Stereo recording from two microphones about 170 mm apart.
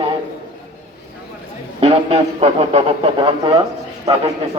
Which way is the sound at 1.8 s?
35° right (ahead or behind).